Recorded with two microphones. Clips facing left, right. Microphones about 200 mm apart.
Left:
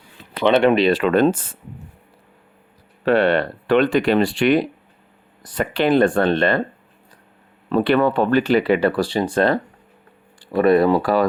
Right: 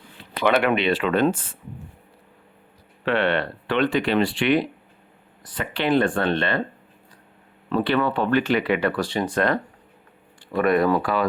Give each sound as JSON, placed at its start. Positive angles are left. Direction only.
{"t": 0.4, "sound": "speech", "side_deg": 25}
{"t": 0.9, "sound": "speech", "side_deg": 45}
{"t": 3.0, "sound": "speech", "side_deg": 40}
{"t": 7.7, "sound": "speech", "side_deg": 45}